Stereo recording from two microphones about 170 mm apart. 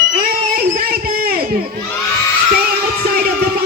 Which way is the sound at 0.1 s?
60° right (ahead or behind).